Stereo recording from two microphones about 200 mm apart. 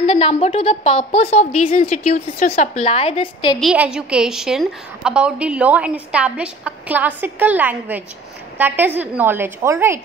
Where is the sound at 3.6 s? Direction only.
5° right (ahead or behind).